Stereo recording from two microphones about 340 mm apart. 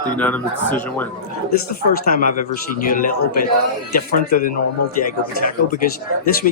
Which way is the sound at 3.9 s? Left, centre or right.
Left.